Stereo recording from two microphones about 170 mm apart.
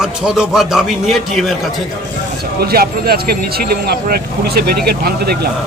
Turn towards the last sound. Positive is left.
turn(degrees=-65)  # may be behind; listen again after turning